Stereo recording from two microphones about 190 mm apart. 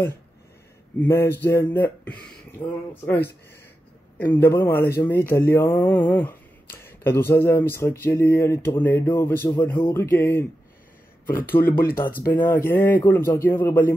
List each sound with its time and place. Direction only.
0.9 s speech: 10° left (ahead or behind)
11.2 s speech: 45° left (ahead or behind)
12.3 s speech: 10° left (ahead or behind)